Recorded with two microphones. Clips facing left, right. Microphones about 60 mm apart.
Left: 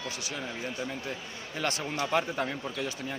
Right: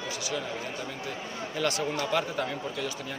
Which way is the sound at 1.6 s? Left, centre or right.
Left.